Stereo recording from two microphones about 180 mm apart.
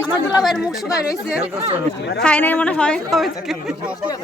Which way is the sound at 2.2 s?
10° left (ahead or behind).